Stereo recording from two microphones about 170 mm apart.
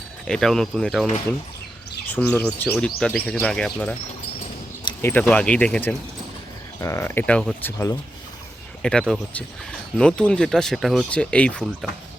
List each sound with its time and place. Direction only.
0.3 s speech: 5° left (ahead or behind)
2.0 s speech: 10° left (ahead or behind)
5.0 s speech: 10° left (ahead or behind)
6.8 s speech: 15° left (ahead or behind)
8.8 s speech: 5° left (ahead or behind)